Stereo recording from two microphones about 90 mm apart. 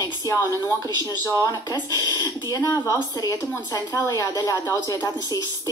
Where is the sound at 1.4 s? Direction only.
45° left (ahead or behind).